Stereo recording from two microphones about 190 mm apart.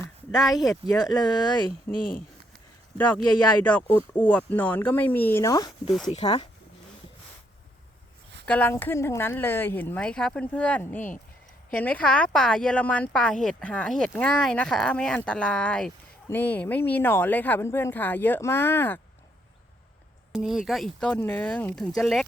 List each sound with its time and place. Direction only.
0.3 s speech: centre (ahead or behind)
0.9 s speech: 20° left (ahead or behind)
3.0 s a woman's voice: 5° left (ahead or behind)
5.9 s a woman's voice: centre (ahead or behind)
6.2 s speech: 25° left (ahead or behind)
8.4 s a woman's voice: 10° left (ahead or behind)
20.3 s a woman's voice: 5° right (ahead or behind)